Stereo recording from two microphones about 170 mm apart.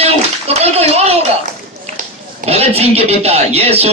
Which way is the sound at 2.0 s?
40° right (ahead or behind).